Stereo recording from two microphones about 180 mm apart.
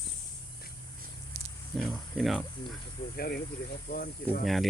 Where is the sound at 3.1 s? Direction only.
55° left (ahead or behind).